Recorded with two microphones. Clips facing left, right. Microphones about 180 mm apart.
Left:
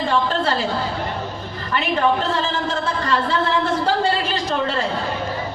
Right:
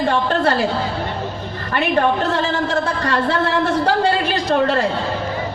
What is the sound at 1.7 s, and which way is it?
A man's voice, 55° right (ahead or behind).